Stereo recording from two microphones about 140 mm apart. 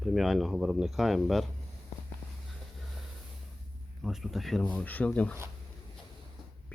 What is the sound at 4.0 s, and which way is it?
Speech, centre (ahead or behind).